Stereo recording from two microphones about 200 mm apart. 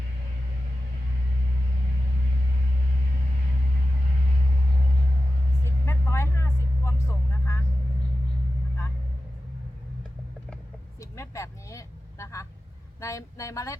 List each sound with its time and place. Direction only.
5.8 s vehicle: 15° left (ahead or behind)
11.0 s vehicle: 15° left (ahead or behind)
13.0 s a sound: 15° left (ahead or behind)